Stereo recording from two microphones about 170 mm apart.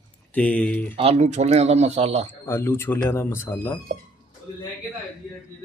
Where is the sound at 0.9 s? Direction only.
35° right (ahead or behind).